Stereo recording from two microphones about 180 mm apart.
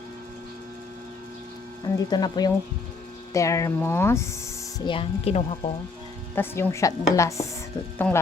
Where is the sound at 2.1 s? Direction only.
20° left (ahead or behind).